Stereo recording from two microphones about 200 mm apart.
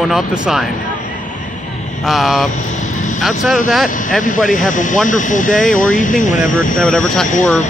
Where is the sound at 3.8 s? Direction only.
40° left (ahead or behind).